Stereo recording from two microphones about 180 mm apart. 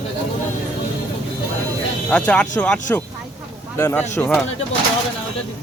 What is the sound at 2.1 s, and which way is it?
Speech, 5° left (ahead or behind).